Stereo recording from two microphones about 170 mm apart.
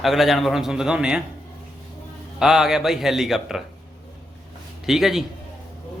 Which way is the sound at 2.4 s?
5° right (ahead or behind).